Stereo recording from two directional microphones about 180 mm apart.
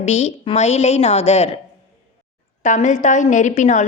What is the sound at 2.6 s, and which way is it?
A woman's voice, 45° left (ahead or behind).